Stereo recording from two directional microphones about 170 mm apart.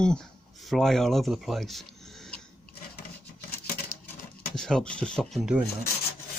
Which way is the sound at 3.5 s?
60° left (ahead or behind).